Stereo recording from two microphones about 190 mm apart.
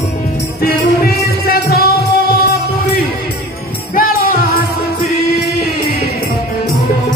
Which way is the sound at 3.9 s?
50° left (ahead or behind).